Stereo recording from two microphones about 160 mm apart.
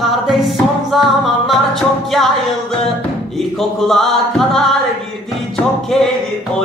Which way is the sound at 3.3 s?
Centre (ahead or behind).